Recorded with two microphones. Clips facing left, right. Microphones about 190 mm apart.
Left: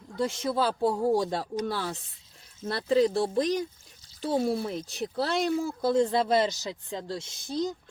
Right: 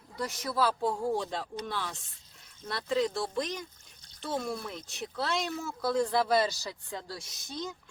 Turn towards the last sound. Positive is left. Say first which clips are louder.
# left 9 dB
turn(degrees=35)  # may be behind; listen again after turning